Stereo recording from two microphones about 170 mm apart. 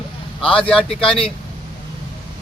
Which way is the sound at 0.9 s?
35° left (ahead or behind).